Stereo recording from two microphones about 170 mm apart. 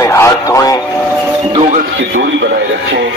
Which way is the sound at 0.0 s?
15° left (ahead or behind).